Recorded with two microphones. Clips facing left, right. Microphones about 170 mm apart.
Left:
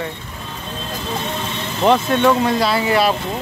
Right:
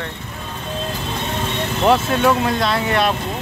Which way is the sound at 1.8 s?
5° right (ahead or behind).